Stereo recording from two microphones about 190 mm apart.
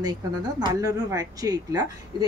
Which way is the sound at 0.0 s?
20° right (ahead or behind).